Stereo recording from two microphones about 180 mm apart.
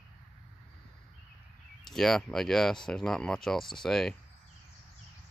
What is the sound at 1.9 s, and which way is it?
Speech, centre (ahead or behind).